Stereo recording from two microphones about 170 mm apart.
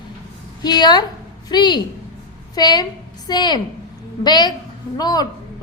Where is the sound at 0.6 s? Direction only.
25° left (ahead or behind).